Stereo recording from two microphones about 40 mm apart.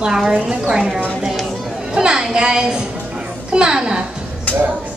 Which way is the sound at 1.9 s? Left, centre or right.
Centre.